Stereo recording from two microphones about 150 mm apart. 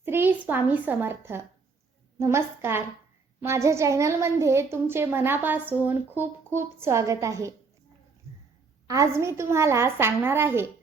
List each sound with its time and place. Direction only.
0.0 s a child's voice: 15° right (ahead or behind)
8.9 s a woman's voice: 20° right (ahead or behind)